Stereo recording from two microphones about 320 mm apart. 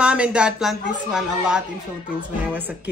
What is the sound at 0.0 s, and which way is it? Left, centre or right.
Speech, centre.